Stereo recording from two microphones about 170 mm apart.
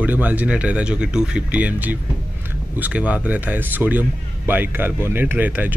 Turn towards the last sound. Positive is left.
turn(degrees=-10)  # may be behind; listen again after turning